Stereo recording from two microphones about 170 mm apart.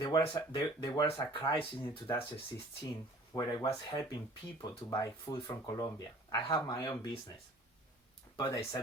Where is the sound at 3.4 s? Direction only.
25° left (ahead or behind).